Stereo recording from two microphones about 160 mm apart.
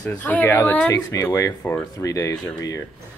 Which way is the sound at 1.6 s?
10° left (ahead or behind).